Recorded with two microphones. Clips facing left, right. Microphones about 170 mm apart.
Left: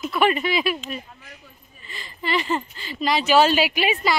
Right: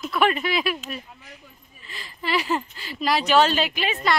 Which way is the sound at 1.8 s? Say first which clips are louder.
Left 2 dB; centre (ahead or behind).